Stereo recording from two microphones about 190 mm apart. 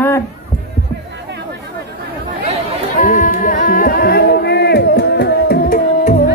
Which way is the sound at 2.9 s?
45° left (ahead or behind).